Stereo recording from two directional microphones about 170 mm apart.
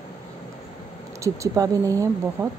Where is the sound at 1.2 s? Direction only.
20° right (ahead or behind).